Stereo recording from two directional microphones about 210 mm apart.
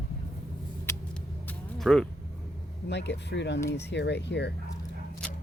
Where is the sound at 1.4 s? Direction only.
Centre (ahead or behind).